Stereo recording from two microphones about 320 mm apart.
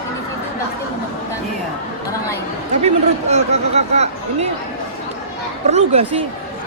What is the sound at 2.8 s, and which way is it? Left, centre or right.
Speech, centre.